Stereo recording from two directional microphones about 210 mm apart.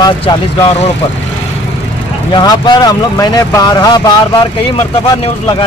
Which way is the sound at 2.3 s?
20° left (ahead or behind).